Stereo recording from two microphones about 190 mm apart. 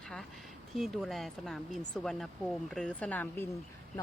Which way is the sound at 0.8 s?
Centre (ahead or behind).